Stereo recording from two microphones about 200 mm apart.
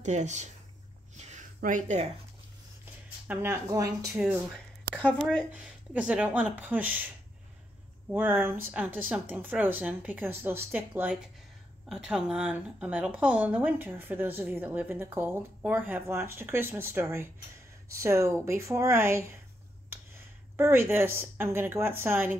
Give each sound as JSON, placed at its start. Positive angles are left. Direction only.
{"t": 0.0, "sound": "speech", "side_deg": -35}
{"t": 1.1, "sound": "a sound", "side_deg": -35}
{"t": 2.8, "sound": "a sound", "side_deg": -10}
{"t": 4.1, "sound": "speech", "side_deg": -5}
{"t": 4.9, "sound": "a woman's voice", "side_deg": 5}
{"t": 8.1, "sound": "a woman's voice", "side_deg": -10}